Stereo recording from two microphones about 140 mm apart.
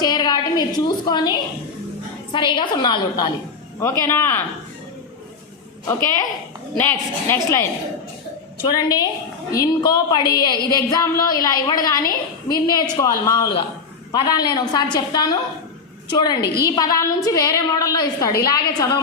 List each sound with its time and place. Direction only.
0.0 s a sound: 30° left (ahead or behind)
1.0 s a woman's voice: 30° left (ahead or behind)
2.3 s a woman's voice: 35° left (ahead or behind)
3.8 s speech: 20° left (ahead or behind)
5.9 s a woman's voice: 20° left (ahead or behind)
8.6 s a woman's voice: 30° left (ahead or behind)